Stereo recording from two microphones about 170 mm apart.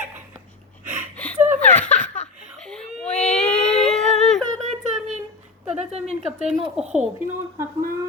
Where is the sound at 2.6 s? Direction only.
5° left (ahead or behind).